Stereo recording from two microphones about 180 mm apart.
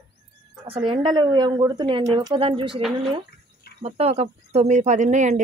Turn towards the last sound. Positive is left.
turn(degrees=-40)  # may be behind; listen again after turning